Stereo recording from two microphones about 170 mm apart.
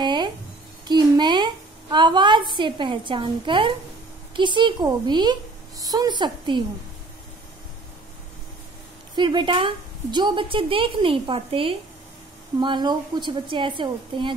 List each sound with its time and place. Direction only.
0.0 s music: 25° right (ahead or behind)
0.8 s a woman's voice: 25° right (ahead or behind)
9.1 s a woman's voice: 25° right (ahead or behind)